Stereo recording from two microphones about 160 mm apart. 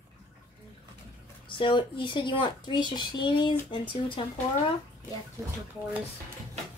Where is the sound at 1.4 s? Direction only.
30° left (ahead or behind).